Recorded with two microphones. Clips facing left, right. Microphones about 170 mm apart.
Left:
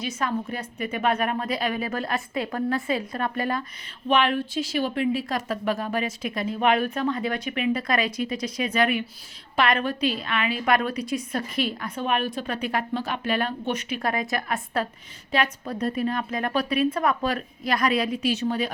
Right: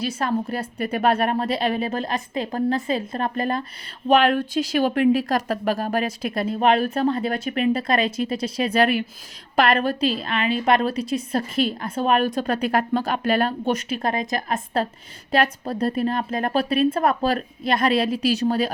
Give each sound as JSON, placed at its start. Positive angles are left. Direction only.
{"t": 0.2, "sound": "a woman's voice", "side_deg": -35}
{"t": 4.1, "sound": "a woman's voice", "side_deg": -40}
{"t": 4.9, "sound": "speech", "side_deg": -65}
{"t": 5.5, "sound": "a woman's voice", "side_deg": -35}